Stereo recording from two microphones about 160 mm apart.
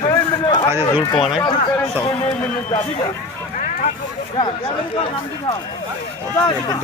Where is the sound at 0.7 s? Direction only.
15° right (ahead or behind).